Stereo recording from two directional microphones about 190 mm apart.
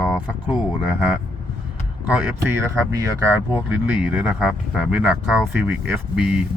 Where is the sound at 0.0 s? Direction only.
5° left (ahead or behind).